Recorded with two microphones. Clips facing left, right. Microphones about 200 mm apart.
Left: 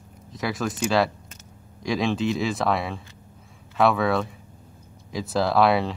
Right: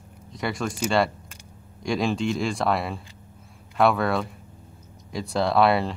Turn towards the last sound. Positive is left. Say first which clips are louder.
# even
turn(degrees=0)  # may be behind; listen again after turning